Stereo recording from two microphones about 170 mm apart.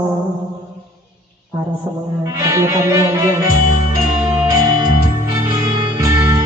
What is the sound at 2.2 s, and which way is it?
Music, 20° right (ahead or behind).